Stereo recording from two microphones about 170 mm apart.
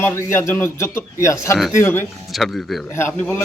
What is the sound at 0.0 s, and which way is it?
A man's voice, 15° left (ahead or behind).